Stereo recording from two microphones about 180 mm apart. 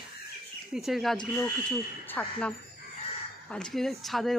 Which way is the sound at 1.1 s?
20° left (ahead or behind).